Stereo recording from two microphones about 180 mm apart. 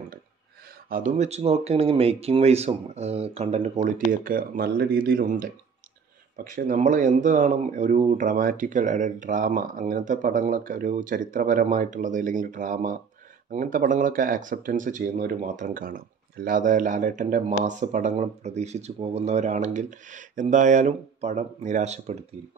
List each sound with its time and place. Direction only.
0.8 s speech: 50° right (ahead or behind)